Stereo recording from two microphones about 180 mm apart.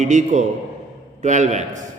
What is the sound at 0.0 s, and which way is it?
Speech, 45° right (ahead or behind).